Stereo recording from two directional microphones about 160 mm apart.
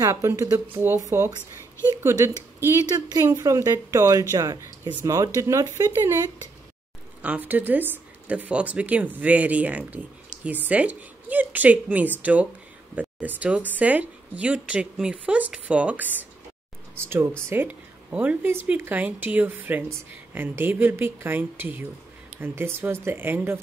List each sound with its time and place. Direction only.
0.0 s speech: 20° right (ahead or behind)
10.3 s a sound: 50° right (ahead or behind)
10.7 s speech: 10° right (ahead or behind)